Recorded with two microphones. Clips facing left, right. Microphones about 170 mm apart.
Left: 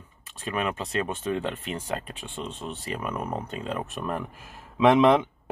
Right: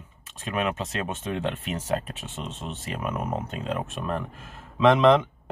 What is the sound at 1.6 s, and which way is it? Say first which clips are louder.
Speech: right 1 dB; 35° left (ahead or behind).